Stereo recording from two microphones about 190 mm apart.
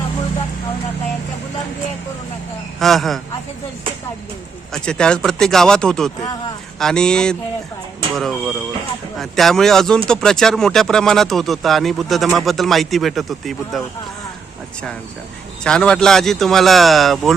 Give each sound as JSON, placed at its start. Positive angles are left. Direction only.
{"t": 2.7, "sound": "speech", "side_deg": 0}
{"t": 4.7, "sound": "speech", "side_deg": 5}
{"t": 15.6, "sound": "speech", "side_deg": 5}